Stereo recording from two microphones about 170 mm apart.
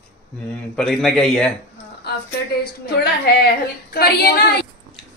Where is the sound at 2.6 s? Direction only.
65° left (ahead or behind).